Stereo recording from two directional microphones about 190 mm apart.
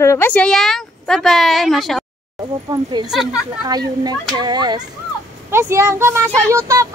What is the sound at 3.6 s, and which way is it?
Speech, 20° right (ahead or behind).